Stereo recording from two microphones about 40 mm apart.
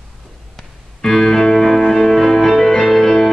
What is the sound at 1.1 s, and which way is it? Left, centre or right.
Music, centre.